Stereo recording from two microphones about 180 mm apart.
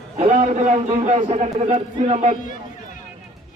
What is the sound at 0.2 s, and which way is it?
A man's voice, 45° right (ahead or behind).